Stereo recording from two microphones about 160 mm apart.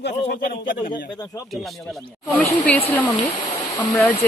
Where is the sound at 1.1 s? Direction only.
20° left (ahead or behind).